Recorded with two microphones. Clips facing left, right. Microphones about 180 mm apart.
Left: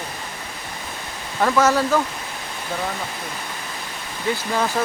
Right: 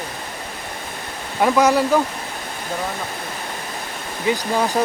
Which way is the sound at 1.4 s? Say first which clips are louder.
Right 2 dB; 15° right (ahead or behind).